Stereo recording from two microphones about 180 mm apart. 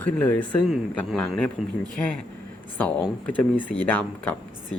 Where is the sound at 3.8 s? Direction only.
10° left (ahead or behind).